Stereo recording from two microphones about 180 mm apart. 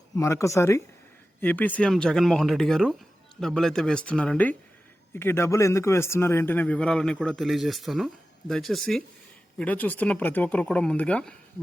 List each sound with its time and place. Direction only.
0.2 s a man's voice: 15° left (ahead or behind)